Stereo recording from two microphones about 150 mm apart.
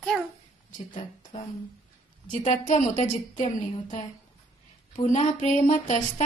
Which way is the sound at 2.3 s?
55° left (ahead or behind).